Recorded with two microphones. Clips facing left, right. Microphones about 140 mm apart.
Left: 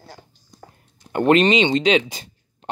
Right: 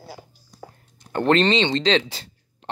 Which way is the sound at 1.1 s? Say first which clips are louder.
Left 3 dB; 15° left (ahead or behind).